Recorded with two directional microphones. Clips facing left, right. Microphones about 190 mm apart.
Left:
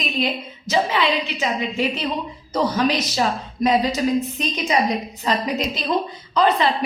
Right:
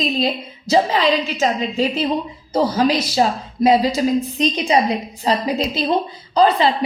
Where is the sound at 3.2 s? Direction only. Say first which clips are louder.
Right 4 dB; 30° right (ahead or behind).